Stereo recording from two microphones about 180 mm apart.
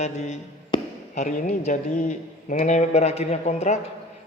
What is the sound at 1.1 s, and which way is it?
Speech, 45° left (ahead or behind).